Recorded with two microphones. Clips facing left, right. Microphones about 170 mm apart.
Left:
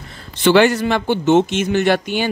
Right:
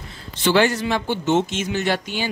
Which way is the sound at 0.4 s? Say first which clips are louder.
Left 5 dB; 65° left (ahead or behind).